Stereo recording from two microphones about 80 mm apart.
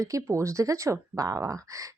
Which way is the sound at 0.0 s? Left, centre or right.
Right.